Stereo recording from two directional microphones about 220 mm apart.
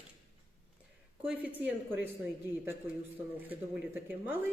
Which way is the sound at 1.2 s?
5° right (ahead or behind).